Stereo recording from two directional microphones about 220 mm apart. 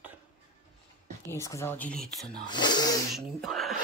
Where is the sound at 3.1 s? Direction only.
Centre (ahead or behind).